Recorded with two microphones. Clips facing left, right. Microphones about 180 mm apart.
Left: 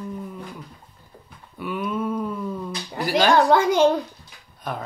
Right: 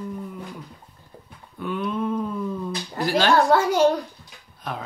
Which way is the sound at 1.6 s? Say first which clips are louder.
Even; 5° left (ahead or behind).